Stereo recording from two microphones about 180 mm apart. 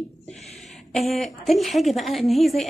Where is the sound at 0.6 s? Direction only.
Centre (ahead or behind).